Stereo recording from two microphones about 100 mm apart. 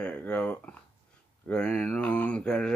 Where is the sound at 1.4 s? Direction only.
10° left (ahead or behind).